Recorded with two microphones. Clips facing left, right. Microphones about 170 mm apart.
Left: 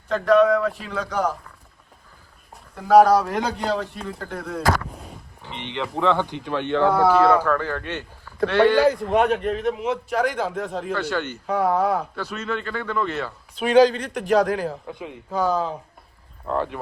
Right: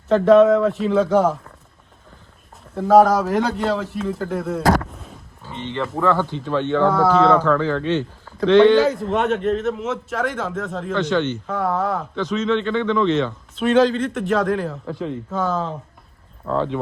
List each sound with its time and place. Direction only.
0.6 s speech: centre (ahead or behind)
2.9 s speech: centre (ahead or behind)
4.9 s roaring cats: centre (ahead or behind)
5.5 s speech: 15° left (ahead or behind)
5.9 s speech: centre (ahead or behind)
6.2 s speech: 15° left (ahead or behind)